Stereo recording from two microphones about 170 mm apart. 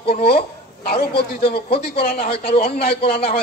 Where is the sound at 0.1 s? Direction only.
65° left (ahead or behind).